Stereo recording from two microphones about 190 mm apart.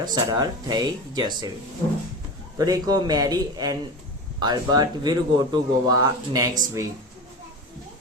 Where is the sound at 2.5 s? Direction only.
20° right (ahead or behind).